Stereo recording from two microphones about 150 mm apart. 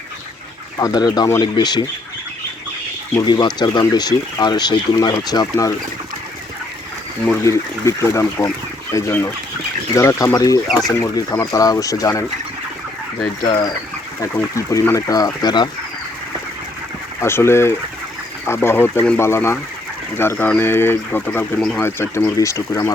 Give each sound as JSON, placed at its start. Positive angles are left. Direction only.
{"t": 0.8, "sound": "speech", "side_deg": 25}
{"t": 3.2, "sound": "speech", "side_deg": 30}
{"t": 7.4, "sound": "speech", "side_deg": 20}
{"t": 14.2, "sound": "speech", "side_deg": 20}
{"t": 17.2, "sound": "speech", "side_deg": 15}